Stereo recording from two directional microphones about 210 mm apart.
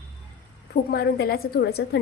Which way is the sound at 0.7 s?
50° left (ahead or behind).